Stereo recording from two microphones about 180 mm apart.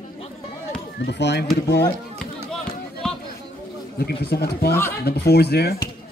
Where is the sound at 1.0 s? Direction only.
70° left (ahead or behind).